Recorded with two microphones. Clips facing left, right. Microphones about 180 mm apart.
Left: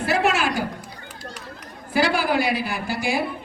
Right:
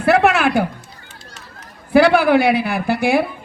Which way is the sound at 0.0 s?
60° right (ahead or behind).